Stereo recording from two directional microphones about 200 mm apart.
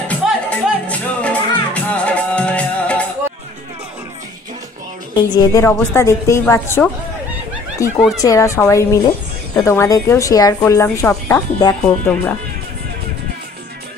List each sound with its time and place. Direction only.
0.1 s music: 5° left (ahead or behind)
5.1 s a woman's voice: 20° left (ahead or behind)
8.2 s a woman's voice: 15° left (ahead or behind)